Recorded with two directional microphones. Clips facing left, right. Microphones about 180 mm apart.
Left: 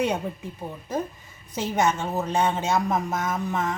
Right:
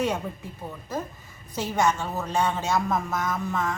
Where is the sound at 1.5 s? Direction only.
20° left (ahead or behind).